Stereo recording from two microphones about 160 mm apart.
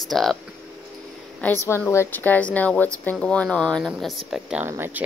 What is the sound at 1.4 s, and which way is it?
A woman's voice, 15° left (ahead or behind).